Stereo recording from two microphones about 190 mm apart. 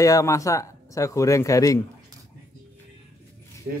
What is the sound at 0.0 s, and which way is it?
Speech, 15° left (ahead or behind).